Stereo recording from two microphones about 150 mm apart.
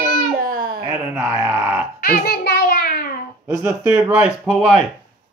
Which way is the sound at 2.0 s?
80° left.